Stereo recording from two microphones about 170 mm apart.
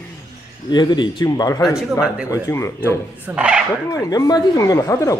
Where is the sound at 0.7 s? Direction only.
25° left (ahead or behind).